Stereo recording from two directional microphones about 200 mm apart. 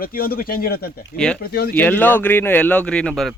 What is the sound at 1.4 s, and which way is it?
Speech, 50° left (ahead or behind).